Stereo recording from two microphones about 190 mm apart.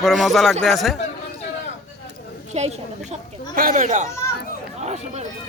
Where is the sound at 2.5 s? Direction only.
35° right (ahead or behind).